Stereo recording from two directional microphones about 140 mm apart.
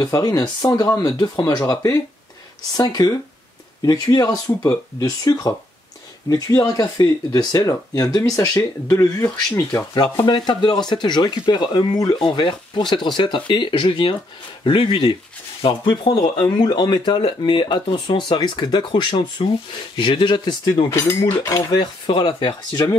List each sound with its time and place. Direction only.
0.0 s speech: 25° left (ahead or behind)
10.2 s speech: 35° left (ahead or behind)
22.0 s speech: 35° left (ahead or behind)